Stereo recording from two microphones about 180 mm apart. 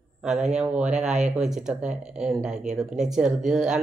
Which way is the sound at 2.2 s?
5° right (ahead or behind).